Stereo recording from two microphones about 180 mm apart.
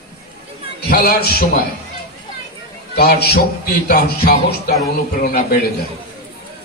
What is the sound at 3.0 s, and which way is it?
Music, 65° left (ahead or behind).